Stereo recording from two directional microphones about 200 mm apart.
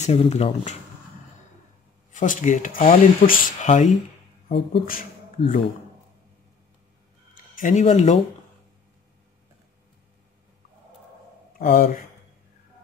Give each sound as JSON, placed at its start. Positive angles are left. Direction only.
{"t": 0.0, "sound": "speech", "side_deg": 35}
{"t": 2.1, "sound": "speech", "side_deg": 40}
{"t": 7.5, "sound": "speech", "side_deg": 40}
{"t": 11.5, "sound": "speech", "side_deg": 45}